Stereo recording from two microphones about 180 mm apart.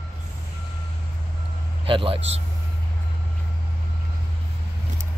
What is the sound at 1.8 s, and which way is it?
Speech, 30° right (ahead or behind).